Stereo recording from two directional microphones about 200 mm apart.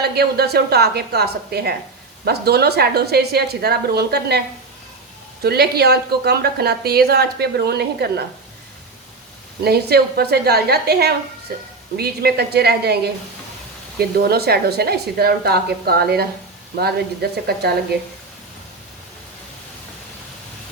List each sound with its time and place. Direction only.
0.0 s a woman's voice: 55° right (ahead or behind)
9.6 s a woman's voice: 50° right (ahead or behind)
14.0 s a woman's voice: 50° right (ahead or behind)
17.4 s a woman's voice: 50° right (ahead or behind)